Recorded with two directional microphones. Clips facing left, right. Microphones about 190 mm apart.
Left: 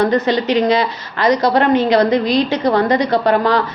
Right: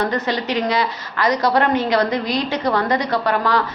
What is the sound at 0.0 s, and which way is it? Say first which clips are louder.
A woman's voice: left 6 dB; 20° left (ahead or behind).